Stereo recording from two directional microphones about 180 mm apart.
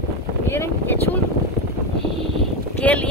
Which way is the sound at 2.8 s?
10° left (ahead or behind).